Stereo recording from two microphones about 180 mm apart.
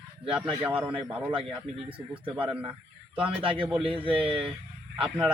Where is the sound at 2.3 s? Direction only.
5° right (ahead or behind).